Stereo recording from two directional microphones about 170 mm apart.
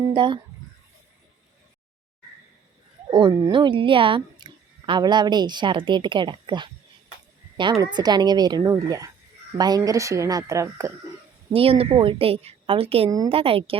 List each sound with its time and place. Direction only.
0.1 s speech: 30° right (ahead or behind)
3.1 s a woman's voice: 25° right (ahead or behind)
11.5 s a woman's voice: 35° right (ahead or behind)
13.1 s a woman's voice: 20° right (ahead or behind)
13.3 s a woman's voice: 35° right (ahead or behind)